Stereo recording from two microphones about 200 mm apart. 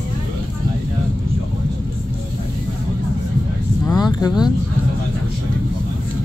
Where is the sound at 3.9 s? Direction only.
20° left (ahead or behind).